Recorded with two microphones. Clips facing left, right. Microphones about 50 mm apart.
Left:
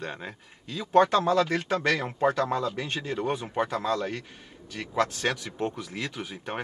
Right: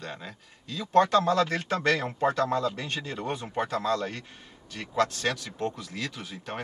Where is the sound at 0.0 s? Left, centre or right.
Left.